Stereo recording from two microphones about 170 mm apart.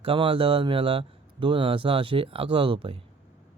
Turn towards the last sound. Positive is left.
turn(degrees=-30)  # may be behind; listen again after turning